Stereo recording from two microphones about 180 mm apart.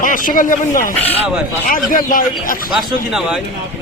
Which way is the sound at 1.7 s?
50° left (ahead or behind).